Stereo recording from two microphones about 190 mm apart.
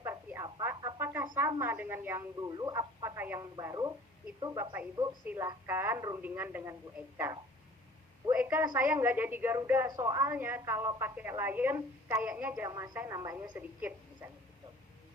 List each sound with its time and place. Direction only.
0.0 s a sound: 15° right (ahead or behind)
0.6 s a woman's voice: 15° right (ahead or behind)
8.3 s a woman's voice: 10° right (ahead or behind)